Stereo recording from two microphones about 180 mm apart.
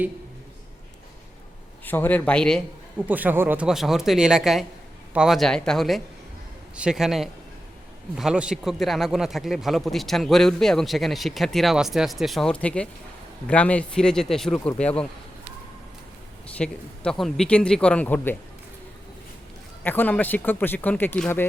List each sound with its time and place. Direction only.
1.8 s speech: 10° left (ahead or behind)
3.1 s speech: 10° right (ahead or behind)
16.6 s speech: 5° left (ahead or behind)
19.8 s speech: 10° left (ahead or behind)